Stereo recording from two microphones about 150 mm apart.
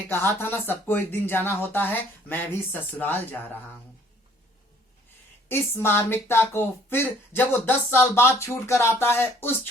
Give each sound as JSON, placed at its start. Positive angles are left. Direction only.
{"t": 0.1, "sound": "speech", "side_deg": 15}
{"t": 5.5, "sound": "speech", "side_deg": 15}